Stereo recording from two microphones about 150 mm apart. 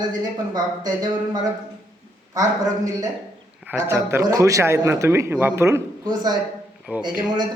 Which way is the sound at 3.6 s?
15° right (ahead or behind).